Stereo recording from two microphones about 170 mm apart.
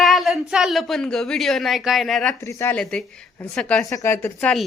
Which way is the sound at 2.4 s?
15° left (ahead or behind).